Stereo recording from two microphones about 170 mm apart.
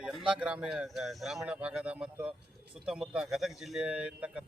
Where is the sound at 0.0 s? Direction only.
5° right (ahead or behind).